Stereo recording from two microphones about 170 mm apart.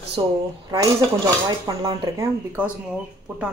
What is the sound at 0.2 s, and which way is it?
Speech, 30° right (ahead or behind).